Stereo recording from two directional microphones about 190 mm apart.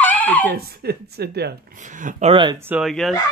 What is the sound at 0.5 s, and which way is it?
A woman's voice, 55° right (ahead or behind).